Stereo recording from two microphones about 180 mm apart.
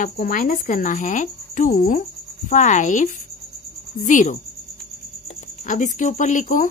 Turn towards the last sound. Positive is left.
turn(degrees=45)  # may be behind; listen again after turning